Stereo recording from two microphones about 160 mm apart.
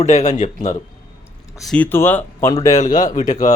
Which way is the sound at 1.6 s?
5° left (ahead or behind).